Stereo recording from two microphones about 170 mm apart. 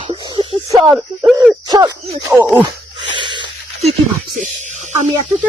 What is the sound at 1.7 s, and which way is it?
Speech, 25° right (ahead or behind).